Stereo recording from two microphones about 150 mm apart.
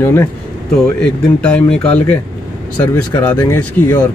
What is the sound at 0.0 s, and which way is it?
Speech, 15° left (ahead or behind).